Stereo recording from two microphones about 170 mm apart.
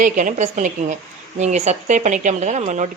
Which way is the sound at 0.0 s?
50° right (ahead or behind).